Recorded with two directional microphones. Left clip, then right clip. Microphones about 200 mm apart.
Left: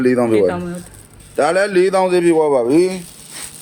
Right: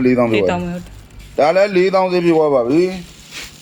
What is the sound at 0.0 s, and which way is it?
Speech, 20° left (ahead or behind).